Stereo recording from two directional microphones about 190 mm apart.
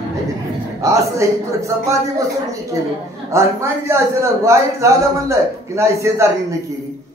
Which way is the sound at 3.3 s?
15° right (ahead or behind).